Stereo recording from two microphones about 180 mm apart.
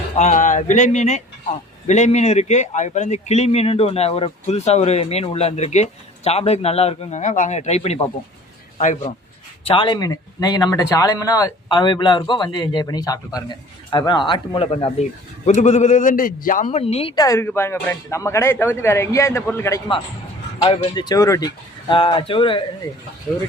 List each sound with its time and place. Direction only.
0.2 s a man's voice: 45° left (ahead or behind)
9.6 s a man's voice: 25° left (ahead or behind); by 16.8 s 50° left (ahead or behind)
16.8 s speech: 35° left (ahead or behind)
17.2 s speech: 15° left (ahead or behind)
20.6 s speech: 30° left (ahead or behind)